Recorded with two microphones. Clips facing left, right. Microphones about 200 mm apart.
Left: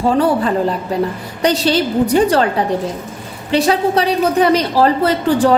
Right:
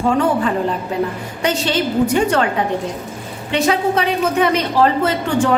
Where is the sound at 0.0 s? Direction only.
35° left (ahead or behind).